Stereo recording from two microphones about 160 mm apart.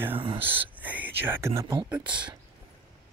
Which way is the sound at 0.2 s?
35° right (ahead or behind).